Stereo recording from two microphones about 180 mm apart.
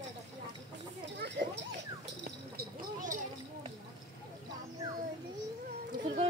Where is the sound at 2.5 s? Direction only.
45° right (ahead or behind).